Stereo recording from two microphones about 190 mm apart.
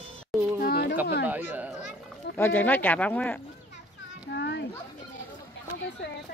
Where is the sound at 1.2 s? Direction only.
10° right (ahead or behind).